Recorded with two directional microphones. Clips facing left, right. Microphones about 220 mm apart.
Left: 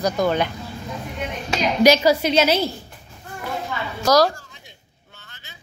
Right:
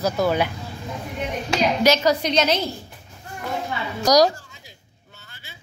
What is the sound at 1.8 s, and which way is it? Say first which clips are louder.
Speech: left 5 dB; 5° left (ahead or behind).